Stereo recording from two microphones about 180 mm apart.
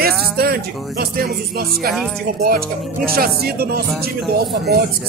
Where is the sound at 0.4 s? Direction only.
60° right (ahead or behind).